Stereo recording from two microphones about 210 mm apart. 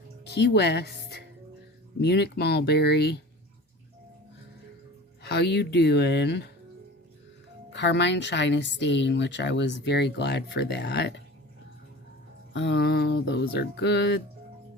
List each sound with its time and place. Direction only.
0.3 s speech: 50° left (ahead or behind)
5.2 s speech: 50° left (ahead or behind)
7.7 s speech: 55° left (ahead or behind)
12.5 s speech: 55° left (ahead or behind)